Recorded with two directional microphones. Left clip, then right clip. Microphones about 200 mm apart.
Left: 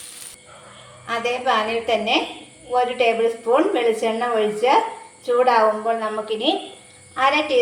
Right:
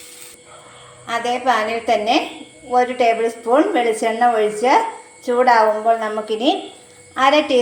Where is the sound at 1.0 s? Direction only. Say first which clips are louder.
Right 3 dB; 25° right (ahead or behind).